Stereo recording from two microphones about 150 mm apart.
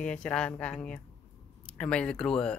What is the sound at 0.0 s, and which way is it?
Speech, 5° left (ahead or behind).